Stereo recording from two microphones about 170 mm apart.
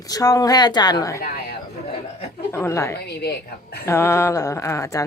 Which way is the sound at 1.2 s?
65° left (ahead or behind).